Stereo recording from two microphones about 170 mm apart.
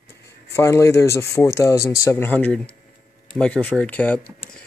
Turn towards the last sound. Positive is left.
turn(degrees=10)  # may be behind; listen again after turning